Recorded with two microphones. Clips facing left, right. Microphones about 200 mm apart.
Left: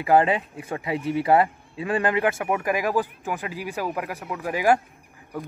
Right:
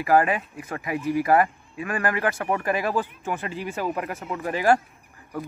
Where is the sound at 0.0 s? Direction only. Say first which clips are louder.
Left 1 dB; 20° left (ahead or behind).